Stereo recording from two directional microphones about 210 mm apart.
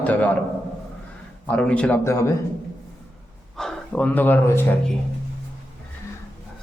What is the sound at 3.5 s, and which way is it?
Speech, 5° left (ahead or behind).